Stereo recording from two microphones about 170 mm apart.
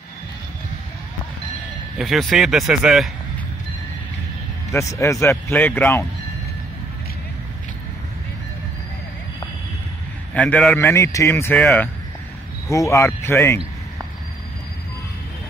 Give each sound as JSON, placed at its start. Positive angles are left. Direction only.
{"t": 2.0, "sound": "speech", "side_deg": 0}
{"t": 4.7, "sound": "speech", "side_deg": 20}
{"t": 10.3, "sound": "speech", "side_deg": 5}
{"t": 10.8, "sound": "speech", "side_deg": 15}
{"t": 11.5, "sound": "speech", "side_deg": 0}
{"t": 12.6, "sound": "speech", "side_deg": 20}